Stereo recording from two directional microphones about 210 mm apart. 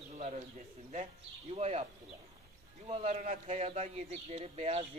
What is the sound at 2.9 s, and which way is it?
A man's voice, 35° right (ahead or behind).